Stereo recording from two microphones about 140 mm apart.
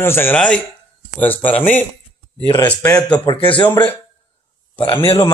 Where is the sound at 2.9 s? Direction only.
10° left (ahead or behind).